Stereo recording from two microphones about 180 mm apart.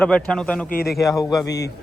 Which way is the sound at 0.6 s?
55° left (ahead or behind).